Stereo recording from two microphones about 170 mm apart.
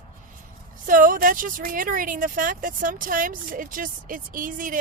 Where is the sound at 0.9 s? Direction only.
55° right (ahead or behind).